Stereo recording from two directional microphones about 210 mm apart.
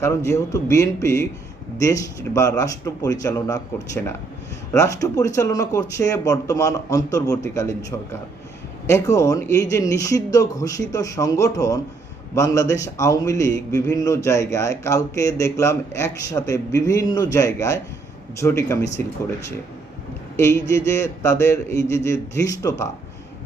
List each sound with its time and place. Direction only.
0.0 s a man's voice: 15° left (ahead or behind)
20.3 s a man's voice: 10° left (ahead or behind)